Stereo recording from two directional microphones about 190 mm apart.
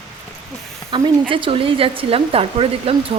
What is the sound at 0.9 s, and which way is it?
Speech, 25° right (ahead or behind).